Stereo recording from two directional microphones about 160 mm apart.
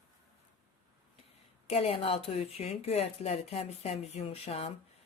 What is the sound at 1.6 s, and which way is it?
Speech, 40° left (ahead or behind).